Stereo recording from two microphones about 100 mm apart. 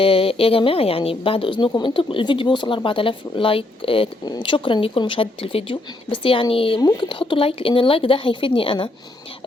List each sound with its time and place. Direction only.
0.0 s a woman's voice: 70° left (ahead or behind)
6.7 s speech: 50° left (ahead or behind)